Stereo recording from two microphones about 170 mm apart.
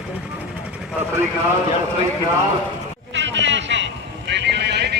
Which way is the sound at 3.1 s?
90° right.